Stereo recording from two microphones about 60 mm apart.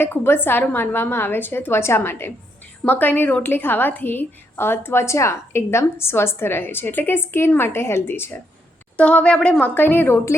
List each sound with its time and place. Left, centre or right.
0.0 s a woman's voice: left
2.8 s a woman's voice: left
9.0 s a woman's voice: centre; by 10.2 s left